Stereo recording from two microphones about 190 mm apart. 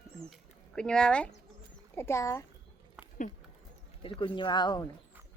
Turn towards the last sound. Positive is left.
turn(degrees=20)  # may be behind; listen again after turning